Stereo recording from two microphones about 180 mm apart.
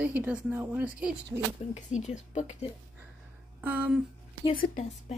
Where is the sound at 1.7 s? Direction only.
40° left (ahead or behind).